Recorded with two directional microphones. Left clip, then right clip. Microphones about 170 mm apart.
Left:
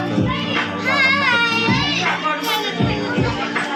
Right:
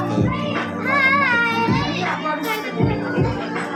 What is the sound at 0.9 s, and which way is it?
Music, 10° right (ahead or behind).